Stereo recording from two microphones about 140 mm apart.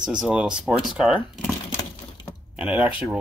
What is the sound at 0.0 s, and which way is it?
Speech, 5° right (ahead or behind).